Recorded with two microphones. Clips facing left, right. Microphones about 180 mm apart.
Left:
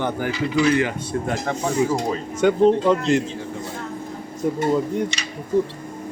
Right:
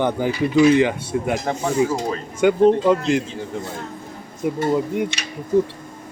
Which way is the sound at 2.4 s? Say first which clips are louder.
Right 1 dB; centre (ahead or behind).